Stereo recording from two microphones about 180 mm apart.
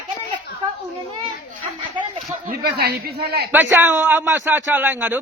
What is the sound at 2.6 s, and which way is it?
Speech, 60° right (ahead or behind).